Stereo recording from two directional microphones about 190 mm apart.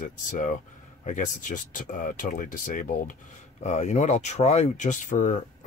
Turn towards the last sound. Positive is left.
turn(degrees=40)  # may be behind; listen again after turning